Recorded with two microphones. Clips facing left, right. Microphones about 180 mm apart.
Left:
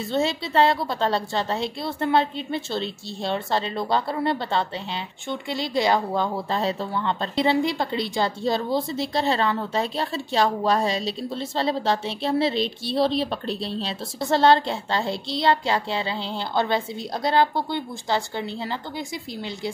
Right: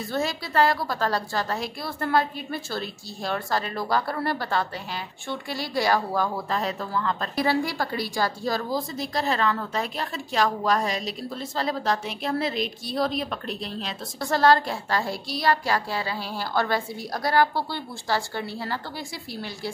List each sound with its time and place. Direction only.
0.0 s a woman's voice: 25° left (ahead or behind)